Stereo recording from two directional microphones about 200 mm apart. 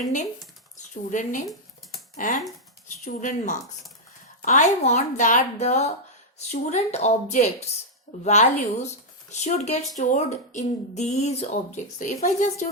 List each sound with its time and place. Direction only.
0.8 s speech: 40° left (ahead or behind)
4.4 s speech: 35° left (ahead or behind)